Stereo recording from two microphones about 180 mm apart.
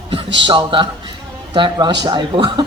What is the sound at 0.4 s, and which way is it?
A woman's voice, 25° right (ahead or behind).